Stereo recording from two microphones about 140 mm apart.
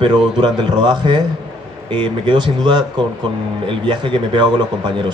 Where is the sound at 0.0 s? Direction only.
30° right (ahead or behind).